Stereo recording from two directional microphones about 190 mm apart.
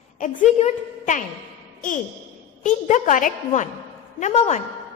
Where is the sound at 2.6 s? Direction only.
40° left (ahead or behind).